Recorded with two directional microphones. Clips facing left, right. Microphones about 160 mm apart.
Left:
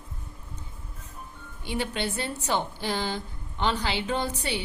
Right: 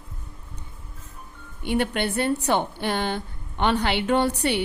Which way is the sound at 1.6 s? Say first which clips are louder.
Right 6 dB; 60° right (ahead or behind).